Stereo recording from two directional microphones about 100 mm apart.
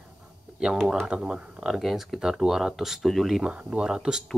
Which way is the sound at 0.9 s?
5° right (ahead or behind).